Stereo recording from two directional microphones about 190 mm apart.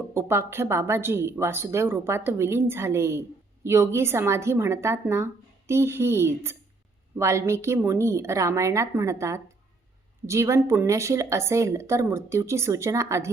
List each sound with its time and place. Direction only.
0.1 s speech: 15° right (ahead or behind)